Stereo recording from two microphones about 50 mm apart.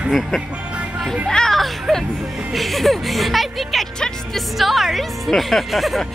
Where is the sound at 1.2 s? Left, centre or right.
Centre.